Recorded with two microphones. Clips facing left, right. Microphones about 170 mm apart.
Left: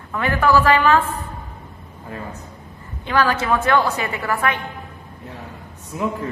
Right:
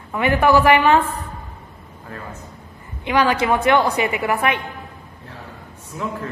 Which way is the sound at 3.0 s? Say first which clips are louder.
Right 2 dB; 15° right (ahead or behind).